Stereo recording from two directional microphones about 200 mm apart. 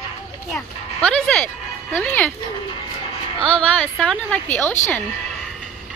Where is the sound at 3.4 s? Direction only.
5° left (ahead or behind).